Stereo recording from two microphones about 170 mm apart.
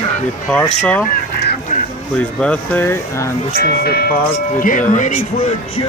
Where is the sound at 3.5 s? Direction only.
70° left (ahead or behind).